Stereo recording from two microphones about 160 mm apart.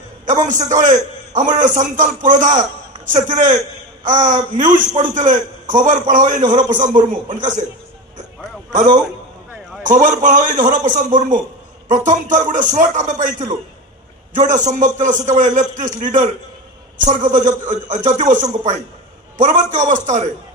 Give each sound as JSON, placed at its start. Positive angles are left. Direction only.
{"t": 0.5, "sound": "a man's voice", "side_deg": -50}
{"t": 9.8, "sound": "a man's voice", "side_deg": -55}